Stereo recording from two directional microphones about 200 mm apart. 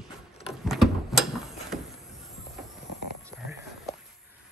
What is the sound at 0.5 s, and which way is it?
Mechanisms, centre (ahead or behind).